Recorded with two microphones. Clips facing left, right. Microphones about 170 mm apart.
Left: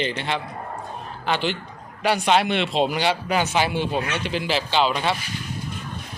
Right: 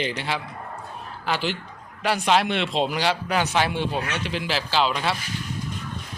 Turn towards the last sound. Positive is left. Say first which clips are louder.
# left 2 dB
turn(degrees=0)  # may be behind; listen again after turning